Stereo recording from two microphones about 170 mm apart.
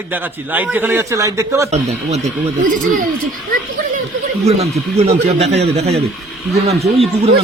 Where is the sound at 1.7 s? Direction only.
40° right (ahead or behind).